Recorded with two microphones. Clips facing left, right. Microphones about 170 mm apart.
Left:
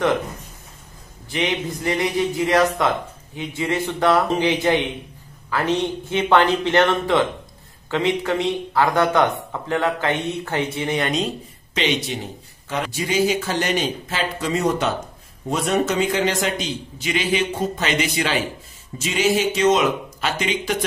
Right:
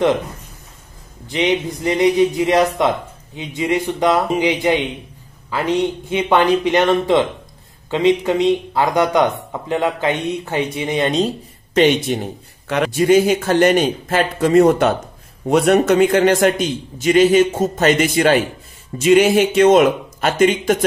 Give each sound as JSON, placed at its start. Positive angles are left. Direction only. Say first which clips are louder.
{"t": 1.3, "sound": "a man's voice", "louder": "right 5 dB", "side_deg": -20}
{"t": 11.1, "sound": "speech", "louder": "right 5 dB", "side_deg": -35}
{"t": 11.7, "sound": "a man's voice", "louder": "right 9 dB", "side_deg": -50}